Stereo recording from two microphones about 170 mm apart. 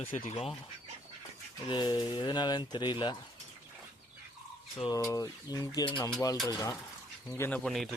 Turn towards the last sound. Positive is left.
turn(degrees=0)  # may be behind; listen again after turning